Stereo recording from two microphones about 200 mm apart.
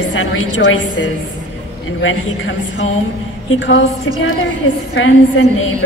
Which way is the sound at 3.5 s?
65° left (ahead or behind).